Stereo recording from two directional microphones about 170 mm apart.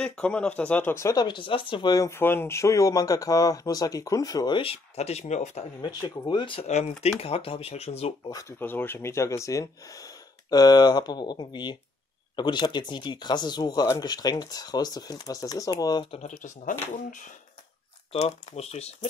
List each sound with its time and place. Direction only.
0.0 s speech: 5° left (ahead or behind)
4.6 s speech: 35° left (ahead or behind)
5.8 s speech: 25° left (ahead or behind)
8.3 s speech: 20° left (ahead or behind)
16.2 s speech: 45° left (ahead or behind)
18.1 s speech: 40° left (ahead or behind)